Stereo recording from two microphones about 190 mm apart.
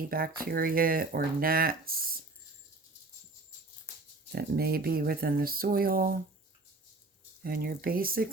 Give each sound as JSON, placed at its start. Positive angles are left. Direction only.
{"t": 0.1, "sound": "speech", "side_deg": -50}
{"t": 4.3, "sound": "speech", "side_deg": -55}
{"t": 7.4, "sound": "speech", "side_deg": -50}